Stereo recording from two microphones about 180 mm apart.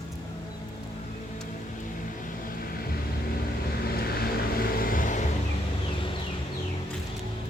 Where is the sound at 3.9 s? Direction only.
60° left (ahead or behind).